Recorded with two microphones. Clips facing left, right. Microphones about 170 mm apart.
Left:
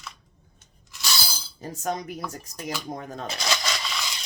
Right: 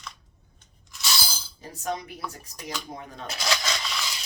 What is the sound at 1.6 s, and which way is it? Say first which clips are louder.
Speech: left 2 dB; 45° left (ahead or behind).